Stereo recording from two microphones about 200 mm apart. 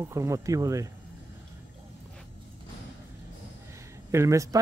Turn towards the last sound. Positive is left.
turn(degrees=-15)  # may be behind; listen again after turning